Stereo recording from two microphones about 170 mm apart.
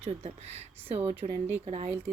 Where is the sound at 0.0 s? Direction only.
40° right (ahead or behind).